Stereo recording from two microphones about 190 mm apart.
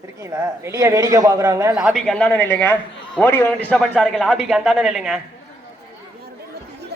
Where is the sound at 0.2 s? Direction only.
15° right (ahead or behind).